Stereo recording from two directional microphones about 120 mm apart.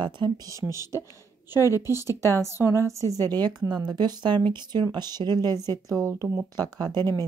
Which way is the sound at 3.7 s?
35° right (ahead or behind).